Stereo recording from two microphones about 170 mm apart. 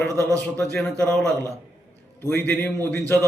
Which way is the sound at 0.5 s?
5° left (ahead or behind).